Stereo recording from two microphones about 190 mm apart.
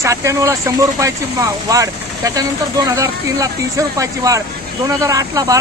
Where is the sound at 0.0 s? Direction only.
15° right (ahead or behind).